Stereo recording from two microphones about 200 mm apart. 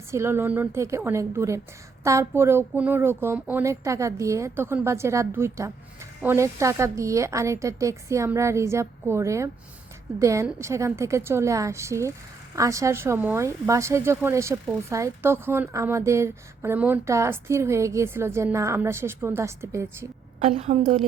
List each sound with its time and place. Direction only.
0.1 s speech: 15° right (ahead or behind)
20.4 s a woman's voice: 35° right (ahead or behind)